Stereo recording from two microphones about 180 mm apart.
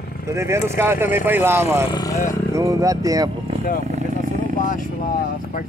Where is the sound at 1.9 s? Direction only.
20° left (ahead or behind).